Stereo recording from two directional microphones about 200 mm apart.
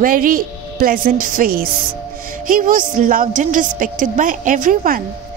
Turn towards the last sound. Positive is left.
turn(degrees=-40)  # may be behind; listen again after turning